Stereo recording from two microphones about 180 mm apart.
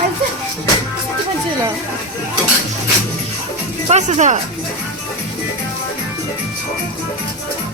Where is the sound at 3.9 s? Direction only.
40° right (ahead or behind).